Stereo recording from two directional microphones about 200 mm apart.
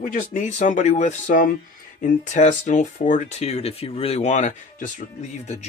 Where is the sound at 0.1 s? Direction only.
40° left (ahead or behind).